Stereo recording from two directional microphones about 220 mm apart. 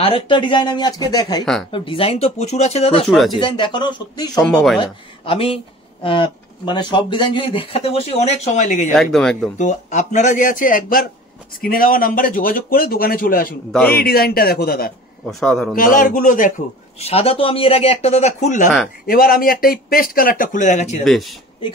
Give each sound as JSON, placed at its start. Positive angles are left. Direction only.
{"t": 0.0, "sound": "speech", "side_deg": 25}
{"t": 1.4, "sound": "speech", "side_deg": 0}
{"t": 1.7, "sound": "speech", "side_deg": 25}
{"t": 4.4, "sound": "speech", "side_deg": 0}
{"t": 5.2, "sound": "speech", "side_deg": 25}
{"t": 8.9, "sound": "speech", "side_deg": 0}
{"t": 9.6, "sound": "a man's voice", "side_deg": 35}
{"t": 13.7, "sound": "speech", "side_deg": 5}
{"t": 13.9, "sound": "speech", "side_deg": 45}
{"t": 15.2, "sound": "speech", "side_deg": 5}
{"t": 15.7, "sound": "a man's voice", "side_deg": 40}
{"t": 21.0, "sound": "speech", "side_deg": 0}